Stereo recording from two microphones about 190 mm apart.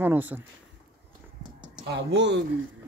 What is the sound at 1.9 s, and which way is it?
Speech, 65° right (ahead or behind).